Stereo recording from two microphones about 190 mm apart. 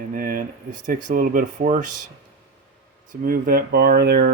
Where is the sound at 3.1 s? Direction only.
50° right (ahead or behind).